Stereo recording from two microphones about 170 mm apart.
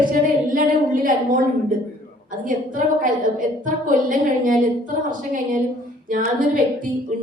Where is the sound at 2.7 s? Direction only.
50° right (ahead or behind).